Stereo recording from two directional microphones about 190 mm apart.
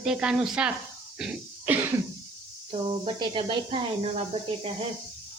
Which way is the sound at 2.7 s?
25° right (ahead or behind).